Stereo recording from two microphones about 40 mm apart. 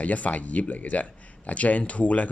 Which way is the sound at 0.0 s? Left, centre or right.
Left.